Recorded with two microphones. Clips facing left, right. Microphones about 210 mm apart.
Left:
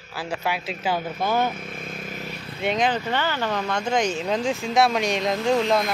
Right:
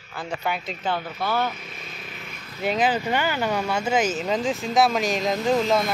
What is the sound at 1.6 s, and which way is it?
Vehicle, 50° left (ahead or behind).